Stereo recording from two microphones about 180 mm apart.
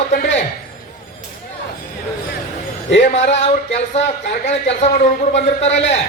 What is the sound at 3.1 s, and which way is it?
A man's voice, 35° left (ahead or behind).